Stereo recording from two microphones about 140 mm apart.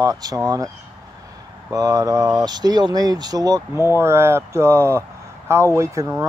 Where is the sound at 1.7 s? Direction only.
25° right (ahead or behind).